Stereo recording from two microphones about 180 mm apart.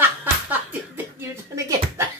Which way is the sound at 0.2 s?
10° right (ahead or behind).